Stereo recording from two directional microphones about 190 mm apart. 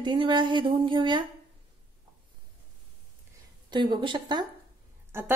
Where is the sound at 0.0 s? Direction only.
25° right (ahead or behind).